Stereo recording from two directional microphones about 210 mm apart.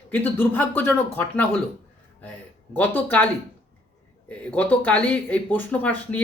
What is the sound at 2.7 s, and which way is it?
Speech, 10° left (ahead or behind).